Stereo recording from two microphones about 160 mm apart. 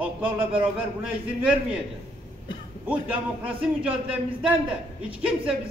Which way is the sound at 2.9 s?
10° right (ahead or behind).